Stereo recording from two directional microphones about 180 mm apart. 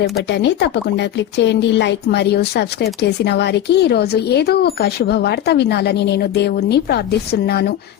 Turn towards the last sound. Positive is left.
turn(degrees=60)  # may be behind; listen again after turning